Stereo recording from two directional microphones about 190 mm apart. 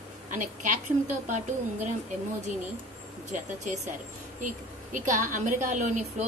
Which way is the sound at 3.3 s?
40° right (ahead or behind).